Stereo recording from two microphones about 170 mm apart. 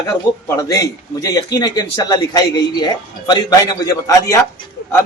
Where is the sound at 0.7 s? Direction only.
20° left (ahead or behind).